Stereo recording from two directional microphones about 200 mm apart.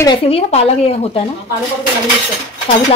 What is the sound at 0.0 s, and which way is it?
Speech, 25° left (ahead or behind).